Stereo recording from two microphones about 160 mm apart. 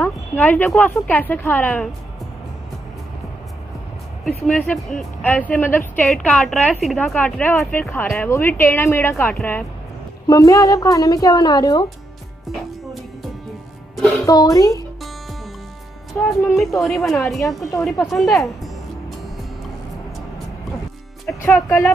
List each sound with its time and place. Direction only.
0.0 s speech: 10° left (ahead or behind)
4.5 s speech: centre (ahead or behind)
6.0 s a woman's voice: centre (ahead or behind)
10.2 s a woman's voice: 20° left (ahead or behind)
13.9 s speech: centre (ahead or behind)
14.2 s a woman's voice: 25° left (ahead or behind)
16.1 s a woman's voice: 5° left (ahead or behind)
21.4 s speech: 10° left (ahead or behind)